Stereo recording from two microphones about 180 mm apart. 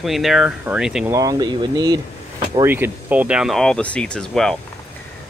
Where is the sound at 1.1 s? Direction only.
20° right (ahead or behind).